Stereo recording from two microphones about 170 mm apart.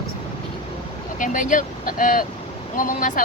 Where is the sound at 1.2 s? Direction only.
50° left (ahead or behind).